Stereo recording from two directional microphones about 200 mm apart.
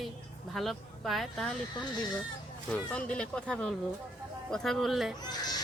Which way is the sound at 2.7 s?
5° left (ahead or behind).